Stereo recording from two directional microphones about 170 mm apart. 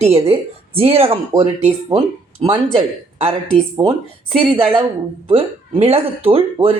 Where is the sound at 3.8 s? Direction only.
30° right (ahead or behind).